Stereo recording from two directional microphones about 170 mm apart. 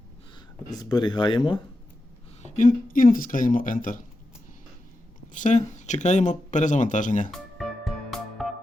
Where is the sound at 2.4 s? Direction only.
45° left (ahead or behind).